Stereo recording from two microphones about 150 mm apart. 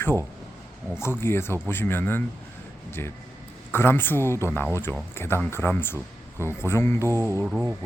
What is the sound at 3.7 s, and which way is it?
Speech, 15° left (ahead or behind).